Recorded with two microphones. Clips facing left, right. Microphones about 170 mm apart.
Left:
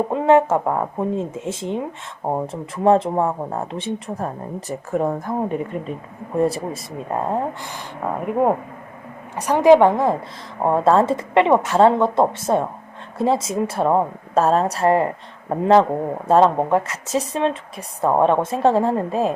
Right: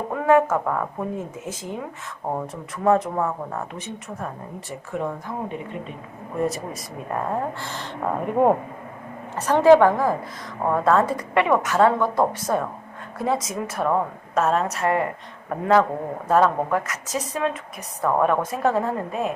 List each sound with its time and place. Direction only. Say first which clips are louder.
0.1 s a woman's voice: left 1 dB; 25° left (ahead or behind)
4.9 s a woman's voice: left 7 dB; 45° left (ahead or behind)
7.1 s speech: left 3 dB; 25° left (ahead or behind); by 8.5 s 5° left (ahead or behind)
9.3 s a woman's voice: left 2 dB; 15° left (ahead or behind); by 19.3 s 30° left (ahead or behind)